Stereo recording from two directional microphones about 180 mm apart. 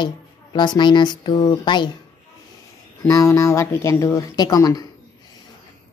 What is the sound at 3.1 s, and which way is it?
Speech, 15° left (ahead or behind).